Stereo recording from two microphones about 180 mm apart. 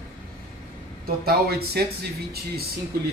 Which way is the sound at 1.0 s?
60° right (ahead or behind).